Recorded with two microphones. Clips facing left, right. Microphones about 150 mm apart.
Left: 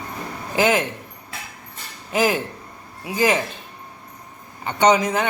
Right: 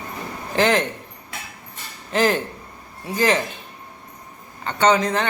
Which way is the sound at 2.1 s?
10° left (ahead or behind).